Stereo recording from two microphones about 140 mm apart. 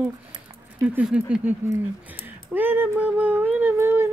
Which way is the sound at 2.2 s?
15° right (ahead or behind).